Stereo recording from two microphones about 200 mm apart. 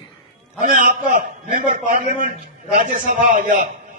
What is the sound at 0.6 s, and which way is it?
Speech, 40° right (ahead or behind).